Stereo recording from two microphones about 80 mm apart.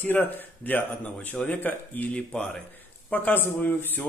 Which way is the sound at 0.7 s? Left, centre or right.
Left.